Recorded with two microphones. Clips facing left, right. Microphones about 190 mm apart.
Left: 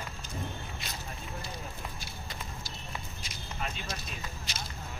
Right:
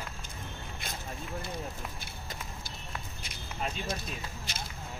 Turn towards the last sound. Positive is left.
turn(degrees=-55)  # may be behind; listen again after turning